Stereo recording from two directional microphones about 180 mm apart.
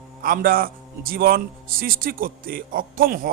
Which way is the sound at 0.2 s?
55° right (ahead or behind).